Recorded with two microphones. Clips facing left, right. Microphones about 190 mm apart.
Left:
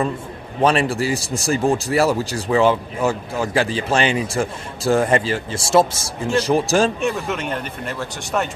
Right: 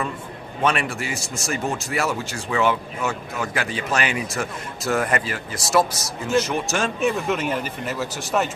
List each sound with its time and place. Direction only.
0.6 s speech: 35° left (ahead or behind)
7.0 s a man's voice: centre (ahead or behind)